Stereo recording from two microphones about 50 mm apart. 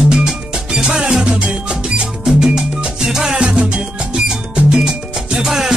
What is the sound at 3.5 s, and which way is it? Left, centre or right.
Music, right.